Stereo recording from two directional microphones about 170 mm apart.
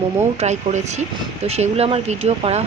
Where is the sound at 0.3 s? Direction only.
45° right (ahead or behind).